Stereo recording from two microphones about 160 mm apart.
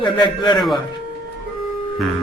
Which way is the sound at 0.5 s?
Centre (ahead or behind).